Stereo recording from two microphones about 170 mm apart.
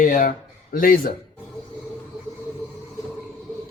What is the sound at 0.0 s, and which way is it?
Speech, 55° left (ahead or behind).